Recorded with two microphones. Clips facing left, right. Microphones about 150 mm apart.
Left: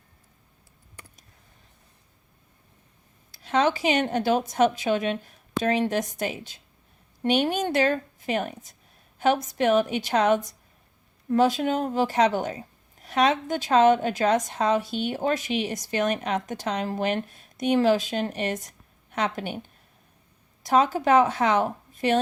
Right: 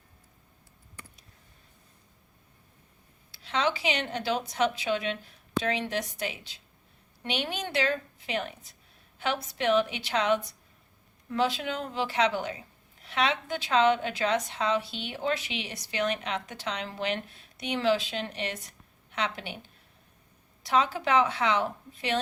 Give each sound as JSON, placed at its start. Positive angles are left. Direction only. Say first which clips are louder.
{"t": 3.3, "sound": "speech", "louder": "left 6 dB", "side_deg": 45}